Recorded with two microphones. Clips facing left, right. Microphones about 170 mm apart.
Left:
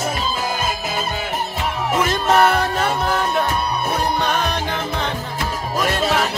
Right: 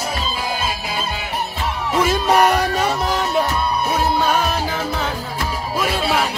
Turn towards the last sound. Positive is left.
turn(degrees=-5)  # may be behind; listen again after turning